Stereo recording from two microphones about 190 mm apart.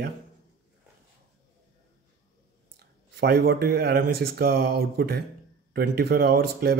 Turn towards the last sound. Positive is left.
turn(degrees=-55)  # may be behind; listen again after turning